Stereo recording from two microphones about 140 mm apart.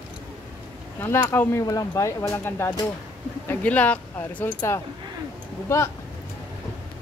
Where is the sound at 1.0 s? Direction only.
15° left (ahead or behind).